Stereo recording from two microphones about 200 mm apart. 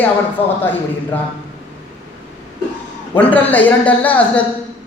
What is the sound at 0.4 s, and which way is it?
Speech, 30° left (ahead or behind).